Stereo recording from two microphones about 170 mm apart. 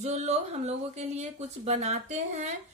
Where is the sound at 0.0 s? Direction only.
40° right (ahead or behind).